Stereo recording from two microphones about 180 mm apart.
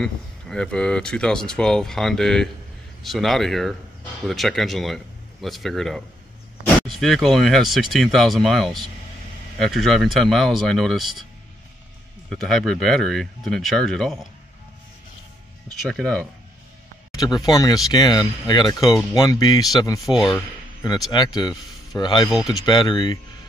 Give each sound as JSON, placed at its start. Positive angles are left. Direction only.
{"t": 0.0, "sound": "speech", "side_deg": 5}
{"t": 12.3, "sound": "speech", "side_deg": 0}
{"t": 15.9, "sound": "speech", "side_deg": 5}
{"t": 17.1, "sound": "a sound", "side_deg": 20}
{"t": 17.5, "sound": "speech", "side_deg": 20}
{"t": 20.2, "sound": "speech", "side_deg": 0}
{"t": 21.1, "sound": "speech", "side_deg": 25}
{"t": 22.3, "sound": "speech", "side_deg": 0}
{"t": 22.7, "sound": "speech", "side_deg": 25}